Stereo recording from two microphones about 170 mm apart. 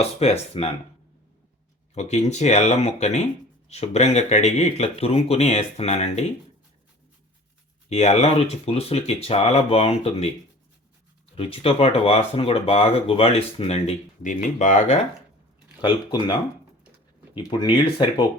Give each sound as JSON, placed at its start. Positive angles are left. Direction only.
{"t": 0.0, "sound": "speech", "side_deg": 35}
{"t": 2.0, "sound": "speech", "side_deg": 40}
{"t": 7.9, "sound": "speech", "side_deg": 40}
{"t": 11.3, "sound": "speech", "side_deg": 35}
{"t": 15.8, "sound": "speech", "side_deg": 25}
{"t": 17.3, "sound": "speech", "side_deg": 25}